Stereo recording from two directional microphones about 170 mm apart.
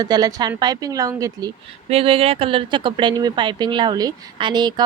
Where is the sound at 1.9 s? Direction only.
35° right (ahead or behind).